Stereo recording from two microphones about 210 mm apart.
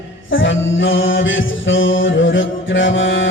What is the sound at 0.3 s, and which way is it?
Music, 65° left (ahead or behind).